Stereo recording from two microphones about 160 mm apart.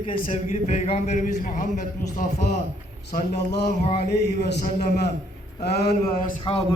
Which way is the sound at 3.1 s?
90° left.